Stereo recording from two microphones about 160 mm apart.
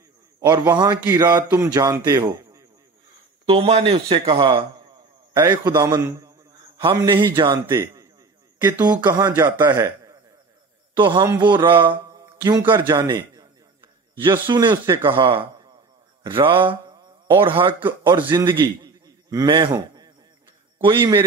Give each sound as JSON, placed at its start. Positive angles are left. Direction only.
{"t": 0.4, "sound": "a man's voice", "side_deg": -25}
{"t": 3.4, "sound": "a man's voice", "side_deg": -35}
{"t": 6.8, "sound": "a man's voice", "side_deg": -30}
{"t": 7.5, "sound": "a man's voice", "side_deg": -15}
{"t": 9.0, "sound": "a man's voice", "side_deg": -25}
{"t": 9.3, "sound": "a man's voice", "side_deg": -15}
{"t": 11.0, "sound": "a man's voice", "side_deg": -30}
{"t": 21.0, "sound": "a man's voice", "side_deg": -15}